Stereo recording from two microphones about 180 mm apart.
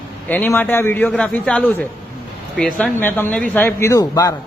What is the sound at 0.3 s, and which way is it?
A man's voice, 10° left (ahead or behind).